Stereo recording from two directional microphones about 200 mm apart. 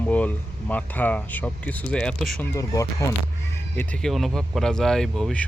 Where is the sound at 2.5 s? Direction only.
15° left (ahead or behind).